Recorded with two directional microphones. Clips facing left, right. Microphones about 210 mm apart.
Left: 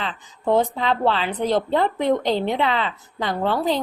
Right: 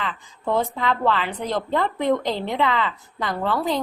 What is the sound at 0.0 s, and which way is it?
A woman's voice, 20° left (ahead or behind).